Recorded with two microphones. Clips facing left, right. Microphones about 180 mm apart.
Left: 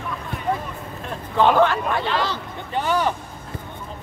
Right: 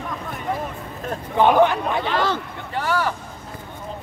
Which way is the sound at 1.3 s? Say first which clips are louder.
Right 1 dB; 15° right (ahead or behind).